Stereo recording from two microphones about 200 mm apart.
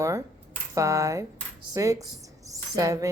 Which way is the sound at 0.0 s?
15° right (ahead or behind).